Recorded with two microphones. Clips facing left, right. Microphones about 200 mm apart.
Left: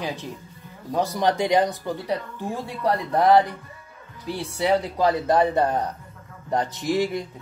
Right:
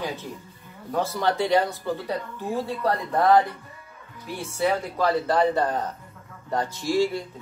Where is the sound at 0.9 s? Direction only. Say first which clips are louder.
Left 2 dB; 15° left (ahead or behind).